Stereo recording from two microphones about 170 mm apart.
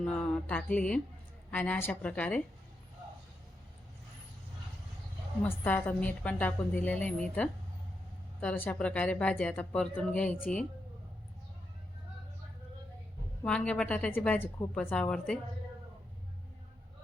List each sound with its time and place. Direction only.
0.0 s a woman's voice: 5° left (ahead or behind)
5.4 s a woman's voice: 10° left (ahead or behind)
13.4 s a woman's voice: 5° left (ahead or behind)